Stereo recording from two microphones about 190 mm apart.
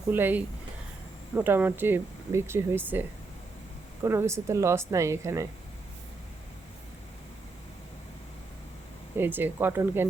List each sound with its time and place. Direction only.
0.1 s speech: 10° right (ahead or behind)
9.1 s speech: 10° right (ahead or behind)